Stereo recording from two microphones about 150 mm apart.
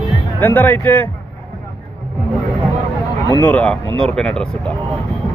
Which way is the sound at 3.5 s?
10° left (ahead or behind).